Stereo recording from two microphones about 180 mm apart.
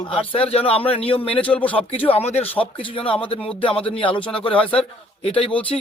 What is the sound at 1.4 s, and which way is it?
Speech, 10° left (ahead or behind).